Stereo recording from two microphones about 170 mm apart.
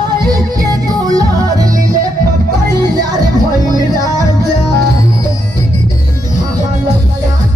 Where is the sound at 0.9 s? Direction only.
20° right (ahead or behind).